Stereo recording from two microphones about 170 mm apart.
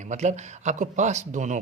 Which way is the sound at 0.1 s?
45° right (ahead or behind).